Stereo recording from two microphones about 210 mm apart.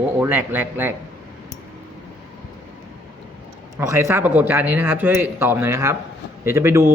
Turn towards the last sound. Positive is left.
turn(degrees=-10)  # may be behind; listen again after turning